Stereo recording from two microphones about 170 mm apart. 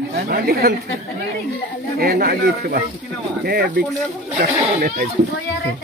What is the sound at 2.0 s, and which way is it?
Speech, 65° right (ahead or behind).